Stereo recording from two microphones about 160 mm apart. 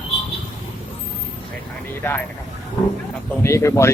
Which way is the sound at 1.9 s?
15° left (ahead or behind).